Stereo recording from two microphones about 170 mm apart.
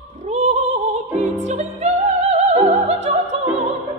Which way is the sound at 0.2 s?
40° right (ahead or behind).